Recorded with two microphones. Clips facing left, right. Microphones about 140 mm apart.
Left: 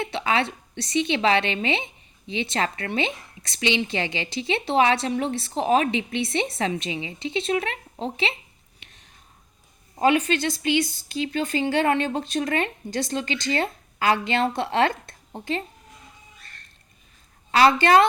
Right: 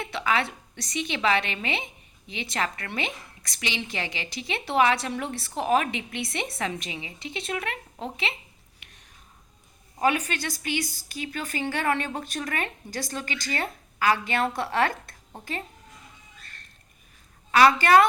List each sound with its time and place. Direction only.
0.0 s a woman's voice: 25° left (ahead or behind)
10.0 s a woman's voice: 25° left (ahead or behind)
17.5 s a woman's voice: 30° left (ahead or behind)